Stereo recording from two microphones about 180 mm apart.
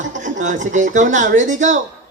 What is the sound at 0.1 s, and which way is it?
Speech, 45° right (ahead or behind).